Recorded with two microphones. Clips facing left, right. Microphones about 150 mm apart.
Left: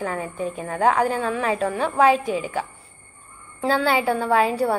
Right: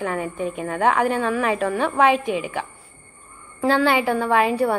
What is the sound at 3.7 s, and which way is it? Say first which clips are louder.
A woman's voice: right 1 dB; 35° left (ahead or behind).